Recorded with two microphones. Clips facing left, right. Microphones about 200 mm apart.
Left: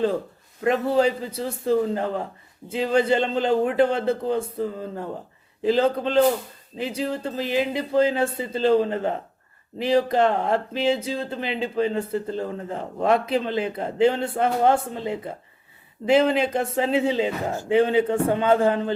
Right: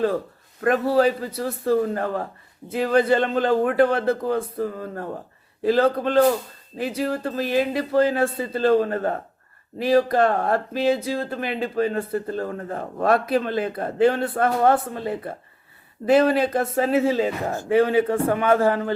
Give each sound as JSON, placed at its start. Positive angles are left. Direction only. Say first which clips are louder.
{"t": 0.6, "sound": "speech", "louder": "right 1 dB", "side_deg": 15}
{"t": 16.8, "sound": "speech", "louder": "right 2 dB", "side_deg": 20}